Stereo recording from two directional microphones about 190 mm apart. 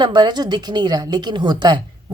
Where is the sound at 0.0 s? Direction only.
25° right (ahead or behind).